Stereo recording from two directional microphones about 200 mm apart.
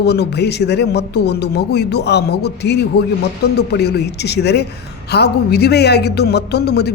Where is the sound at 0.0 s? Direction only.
55° left (ahead or behind).